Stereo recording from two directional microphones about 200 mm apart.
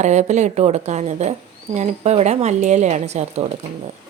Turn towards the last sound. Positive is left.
turn(degrees=-30)  # may be behind; listen again after turning